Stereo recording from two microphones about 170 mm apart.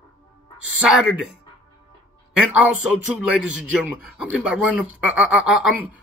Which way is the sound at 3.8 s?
10° right (ahead or behind).